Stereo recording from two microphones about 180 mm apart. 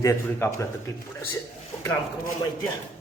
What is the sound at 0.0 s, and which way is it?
A man's voice, 15° left (ahead or behind).